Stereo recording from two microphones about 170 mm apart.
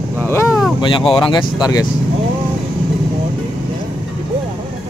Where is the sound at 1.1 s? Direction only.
25° left (ahead or behind).